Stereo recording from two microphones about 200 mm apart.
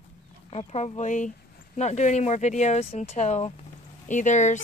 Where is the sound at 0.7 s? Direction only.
35° left (ahead or behind).